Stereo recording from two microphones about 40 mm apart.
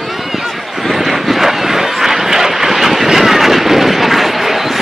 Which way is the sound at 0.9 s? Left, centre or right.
Centre.